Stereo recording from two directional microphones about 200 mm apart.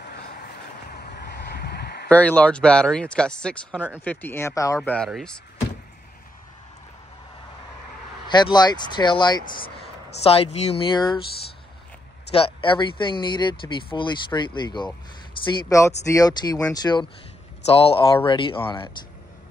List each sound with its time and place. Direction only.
0.8 s a sound: 50° left (ahead or behind)
2.0 s speech: 5° left (ahead or behind)
4.8 s speech: 5° left (ahead or behind)
8.3 s speech: 20° left (ahead or behind)
12.3 s speech: 30° left (ahead or behind)